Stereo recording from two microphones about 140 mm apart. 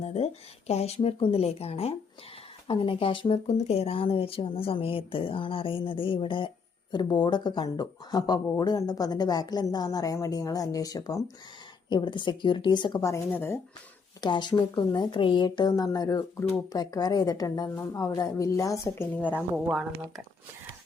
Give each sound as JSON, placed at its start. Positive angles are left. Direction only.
{"t": 0.0, "sound": "a sound", "side_deg": 50}
{"t": 0.7, "sound": "speech", "side_deg": 50}
{"t": 13.1, "sound": "speech", "side_deg": 20}
{"t": 14.2, "sound": "speech", "side_deg": 35}
{"t": 19.1, "sound": "speech", "side_deg": 10}